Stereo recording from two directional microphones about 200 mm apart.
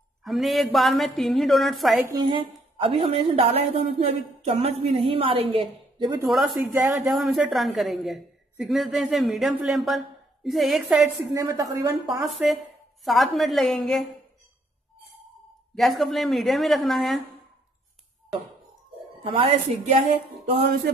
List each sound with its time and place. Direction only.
0.2 s a woman's voice: centre (ahead or behind)
2.0 s a woman's voice: 20° right (ahead or behind)
6.2 s a woman's voice: centre (ahead or behind)
6.8 s a woman's voice: 15° right (ahead or behind)
7.1 s a woman's voice: 5° right (ahead or behind)
11.3 s a woman's voice: 15° right (ahead or behind)
12.4 s a woman's voice: 5° right (ahead or behind)
15.7 s a woman's voice: centre (ahead or behind)
19.2 s a woman's voice: 25° right (ahead or behind)